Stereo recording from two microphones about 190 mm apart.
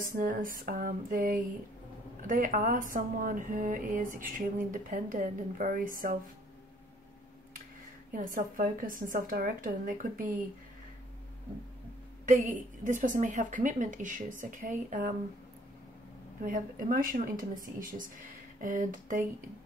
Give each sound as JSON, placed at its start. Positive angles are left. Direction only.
{"t": 0.0, "sound": "speech", "side_deg": -45}
{"t": 8.1, "sound": "speech", "side_deg": -45}
{"t": 12.3, "sound": "speech", "side_deg": -40}
{"t": 16.4, "sound": "speech", "side_deg": -45}